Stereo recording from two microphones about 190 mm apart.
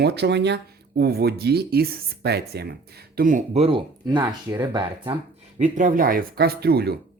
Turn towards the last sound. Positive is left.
turn(degrees=-55)  # may be behind; listen again after turning